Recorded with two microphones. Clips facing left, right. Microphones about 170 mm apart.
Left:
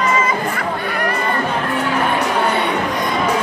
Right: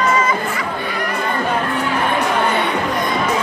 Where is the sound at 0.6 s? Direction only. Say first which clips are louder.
Left 2 dB; 55° left (ahead or behind).